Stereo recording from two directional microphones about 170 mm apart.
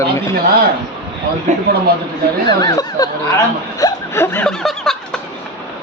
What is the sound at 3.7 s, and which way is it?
Hiccup, 15° left (ahead or behind).